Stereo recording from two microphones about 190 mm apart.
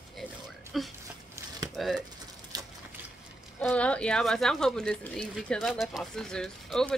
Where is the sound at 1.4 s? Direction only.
15° right (ahead or behind).